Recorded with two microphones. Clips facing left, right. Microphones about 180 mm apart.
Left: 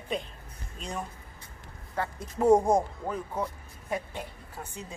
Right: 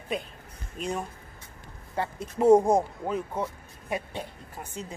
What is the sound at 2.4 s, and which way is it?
Speech, 10° right (ahead or behind).